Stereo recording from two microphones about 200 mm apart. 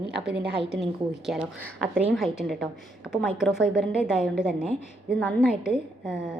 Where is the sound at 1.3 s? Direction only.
5° right (ahead or behind).